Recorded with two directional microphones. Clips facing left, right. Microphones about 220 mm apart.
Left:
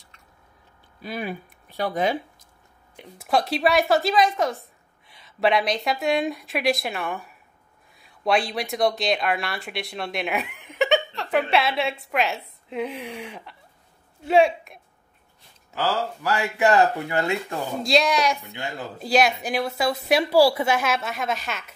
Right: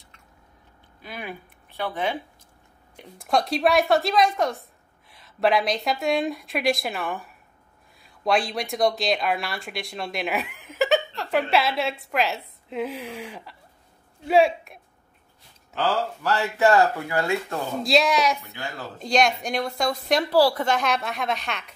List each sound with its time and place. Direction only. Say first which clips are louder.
1.0 s speech: left 5 dB; 35° left (ahead or behind)
3.0 s a woman's voice: left 1 dB; 5° left (ahead or behind); by 17.6 s 20° left (ahead or behind)
17.8 s a woman's voice: even; centre (ahead or behind)
18.5 s a man's voice: left 2 dB; 20° left (ahead or behind)
18.9 s a woman's voice: left 1 dB; 5° left (ahead or behind)